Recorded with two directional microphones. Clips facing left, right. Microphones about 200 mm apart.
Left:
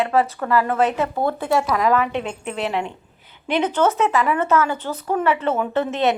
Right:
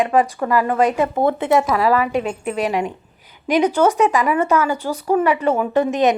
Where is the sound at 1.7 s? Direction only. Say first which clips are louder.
Right 2 dB; 5° right (ahead or behind).